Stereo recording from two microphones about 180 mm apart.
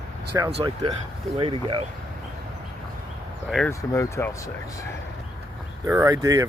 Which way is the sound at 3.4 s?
Centre (ahead or behind).